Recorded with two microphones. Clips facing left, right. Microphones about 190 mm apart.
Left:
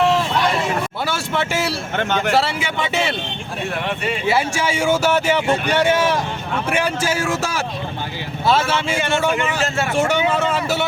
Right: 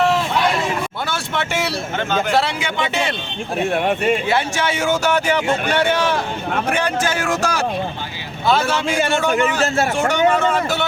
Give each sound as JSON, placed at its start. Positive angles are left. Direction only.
{"t": 1.0, "sound": "speech", "side_deg": 5}
{"t": 3.7, "sound": "speech", "side_deg": -50}
{"t": 4.3, "sound": "speech", "side_deg": 10}